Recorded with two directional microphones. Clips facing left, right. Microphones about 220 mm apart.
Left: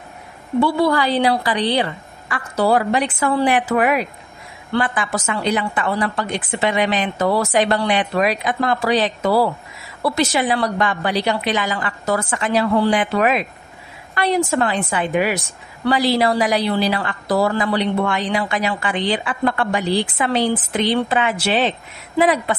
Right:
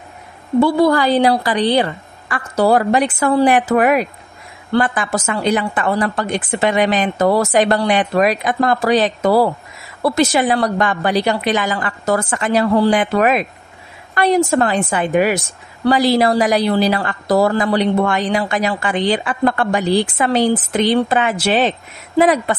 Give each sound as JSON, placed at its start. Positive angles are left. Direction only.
{"t": 0.6, "sound": "a woman's voice", "side_deg": -45}